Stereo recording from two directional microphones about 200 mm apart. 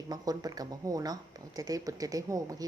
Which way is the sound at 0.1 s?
20° right (ahead or behind).